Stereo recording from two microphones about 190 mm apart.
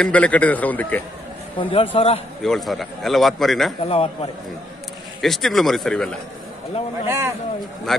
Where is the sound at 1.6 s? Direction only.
30° left (ahead or behind).